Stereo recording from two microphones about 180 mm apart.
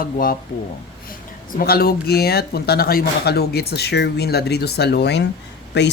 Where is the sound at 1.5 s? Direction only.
55° left (ahead or behind).